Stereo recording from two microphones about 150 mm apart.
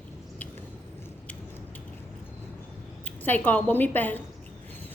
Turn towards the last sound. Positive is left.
turn(degrees=10)  # may be behind; listen again after turning